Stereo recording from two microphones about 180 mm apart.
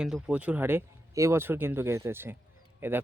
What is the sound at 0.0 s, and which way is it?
Speech, 5° right (ahead or behind).